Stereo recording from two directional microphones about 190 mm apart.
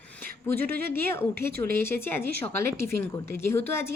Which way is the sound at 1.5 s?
55° right (ahead or behind).